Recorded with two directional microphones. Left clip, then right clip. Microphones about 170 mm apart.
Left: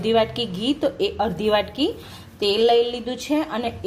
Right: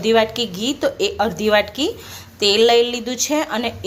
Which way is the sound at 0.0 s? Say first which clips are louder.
Right 4 dB; centre (ahead or behind).